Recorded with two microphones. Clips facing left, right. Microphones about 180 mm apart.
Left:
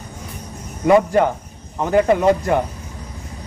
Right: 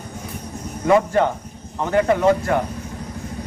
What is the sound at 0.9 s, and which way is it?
Speech, 15° left (ahead or behind).